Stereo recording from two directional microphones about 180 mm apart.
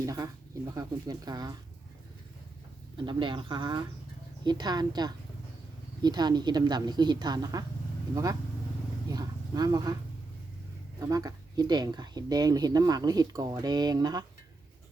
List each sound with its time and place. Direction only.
0.0 s speech: 20° right (ahead or behind)
3.0 s speech: 25° right (ahead or behind)
11.0 s speech: 20° right (ahead or behind)